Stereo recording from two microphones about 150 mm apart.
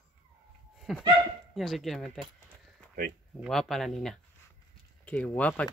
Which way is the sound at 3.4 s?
Centre (ahead or behind).